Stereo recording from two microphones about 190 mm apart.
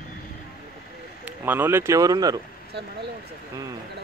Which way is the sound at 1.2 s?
10° right (ahead or behind).